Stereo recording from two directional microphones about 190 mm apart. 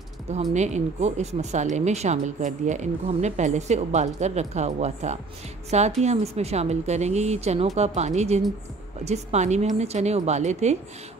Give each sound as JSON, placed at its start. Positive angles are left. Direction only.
{"t": 0.3, "sound": "speech", "side_deg": -40}